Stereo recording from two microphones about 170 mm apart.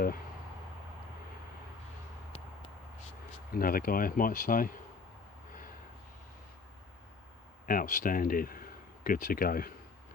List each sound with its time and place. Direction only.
3.5 s speech: 60° left (ahead or behind)
7.7 s speech: 50° left (ahead or behind)